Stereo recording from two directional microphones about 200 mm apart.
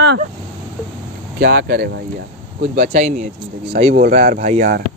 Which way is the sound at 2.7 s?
35° right (ahead or behind).